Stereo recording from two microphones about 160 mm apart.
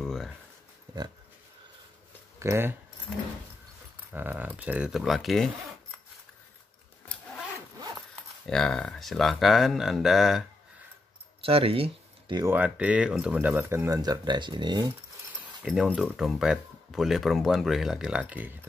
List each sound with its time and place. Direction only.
0.0 s a sound: centre (ahead or behind)
0.9 s a sound: 20° right (ahead or behind)
2.3 s speech: 15° right (ahead or behind)
3.1 s speech: 5° right (ahead or behind)
8.5 s speech: 5° left (ahead or behind)
11.4 s speech: 35° right (ahead or behind)
12.4 s speech: 10° right (ahead or behind)
15.6 s speech: centre (ahead or behind)